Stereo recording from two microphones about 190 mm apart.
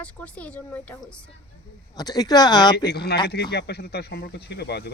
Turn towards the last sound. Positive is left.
turn(degrees=60)  # may be behind; listen again after turning